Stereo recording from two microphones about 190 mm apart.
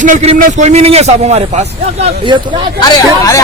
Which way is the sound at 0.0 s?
35° right (ahead or behind).